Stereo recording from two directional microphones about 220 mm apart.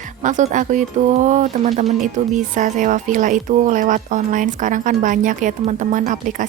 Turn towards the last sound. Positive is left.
turn(degrees=-35)  # may be behind; listen again after turning